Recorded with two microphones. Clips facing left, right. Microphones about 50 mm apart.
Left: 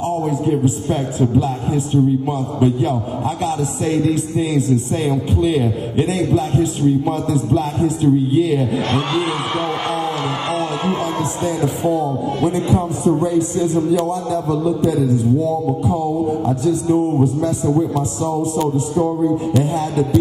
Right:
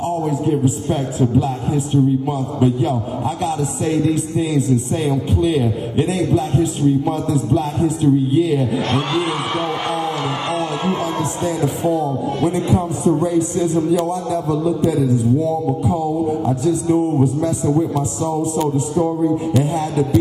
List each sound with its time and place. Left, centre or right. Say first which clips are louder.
0.5 s a man's voice: even; centre
4.9 s a man's voice: even; centre
7.6 s a man's voice: even; centre
10.0 s a sound: even; centre
11.1 s a man's voice: even; centre
14.9 s a man's voice: even; right
15.9 s a man's voice: even; centre
17.2 s a man's voice: even; right
18.3 s speech: even; centre
19.0 s music: even; centre
19.7 s a man's voice: even; right